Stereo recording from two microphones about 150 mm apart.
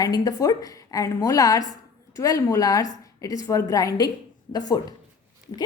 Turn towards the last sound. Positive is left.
turn(degrees=25)  # may be behind; listen again after turning